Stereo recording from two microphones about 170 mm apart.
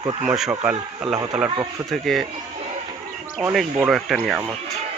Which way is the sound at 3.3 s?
5° right (ahead or behind).